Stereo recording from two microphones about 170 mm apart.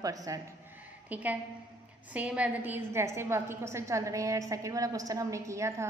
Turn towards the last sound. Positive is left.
turn(degrees=-15)  # may be behind; listen again after turning